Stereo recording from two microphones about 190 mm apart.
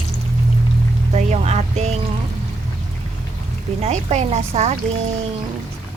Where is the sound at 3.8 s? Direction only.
35° right (ahead or behind).